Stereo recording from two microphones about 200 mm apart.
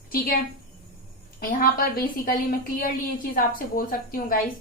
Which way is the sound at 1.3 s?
45° left (ahead or behind).